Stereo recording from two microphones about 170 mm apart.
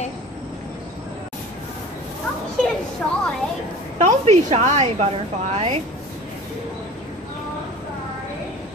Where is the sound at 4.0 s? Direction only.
45° right (ahead or behind).